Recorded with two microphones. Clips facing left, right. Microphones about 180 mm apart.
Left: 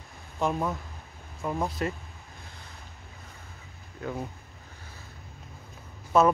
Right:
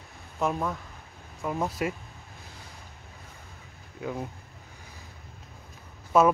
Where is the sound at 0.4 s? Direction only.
5° right (ahead or behind).